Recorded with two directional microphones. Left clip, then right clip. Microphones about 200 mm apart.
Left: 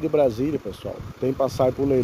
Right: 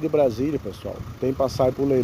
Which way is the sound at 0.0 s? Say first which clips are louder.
Even; centre (ahead or behind).